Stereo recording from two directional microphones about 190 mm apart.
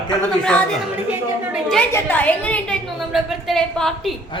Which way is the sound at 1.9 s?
10° left (ahead or behind).